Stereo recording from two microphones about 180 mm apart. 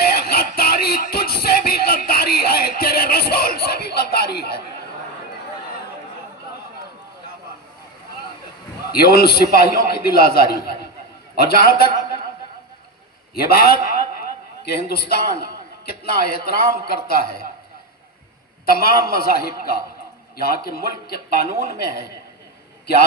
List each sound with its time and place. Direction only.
0.0 s music: 60° left (ahead or behind)
8.9 s a man's voice: 60° left (ahead or behind)
13.3 s a man's voice: 60° left (ahead or behind)
18.7 s a man's voice: 60° left (ahead or behind)